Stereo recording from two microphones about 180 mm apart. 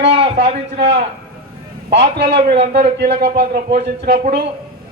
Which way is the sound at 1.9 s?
70° right (ahead or behind).